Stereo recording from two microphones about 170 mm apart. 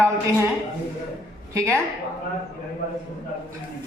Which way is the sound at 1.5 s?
15° right (ahead or behind).